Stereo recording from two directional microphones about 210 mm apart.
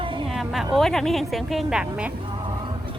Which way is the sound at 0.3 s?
Centre (ahead or behind).